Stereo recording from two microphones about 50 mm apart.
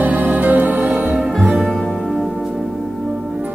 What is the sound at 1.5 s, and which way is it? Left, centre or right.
Music, centre.